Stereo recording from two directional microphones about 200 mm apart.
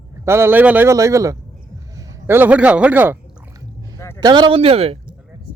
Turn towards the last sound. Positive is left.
turn(degrees=-30)  # may be behind; listen again after turning